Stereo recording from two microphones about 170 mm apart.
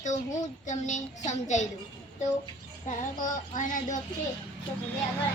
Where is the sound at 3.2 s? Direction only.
50° left (ahead or behind).